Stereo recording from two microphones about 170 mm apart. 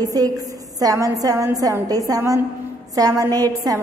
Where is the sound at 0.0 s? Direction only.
20° right (ahead or behind).